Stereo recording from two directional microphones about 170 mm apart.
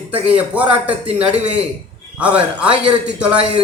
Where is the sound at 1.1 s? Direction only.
40° right (ahead or behind).